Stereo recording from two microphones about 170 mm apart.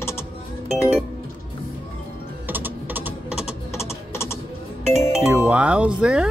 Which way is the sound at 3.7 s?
15° left (ahead or behind).